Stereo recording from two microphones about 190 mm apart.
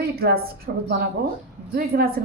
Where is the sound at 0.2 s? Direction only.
55° right (ahead or behind).